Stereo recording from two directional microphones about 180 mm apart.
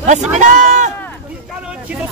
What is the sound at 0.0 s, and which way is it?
Speech, 40° right (ahead or behind).